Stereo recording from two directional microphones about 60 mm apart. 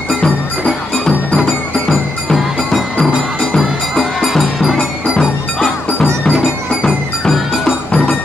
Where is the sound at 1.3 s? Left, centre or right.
Centre.